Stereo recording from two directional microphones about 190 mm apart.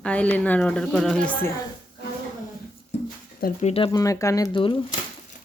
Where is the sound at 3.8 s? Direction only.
15° left (ahead or behind).